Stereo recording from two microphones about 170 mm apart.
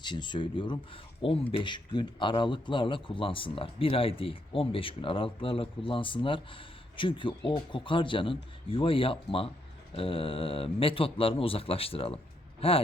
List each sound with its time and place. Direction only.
0.0 s speech: 25° left (ahead or behind)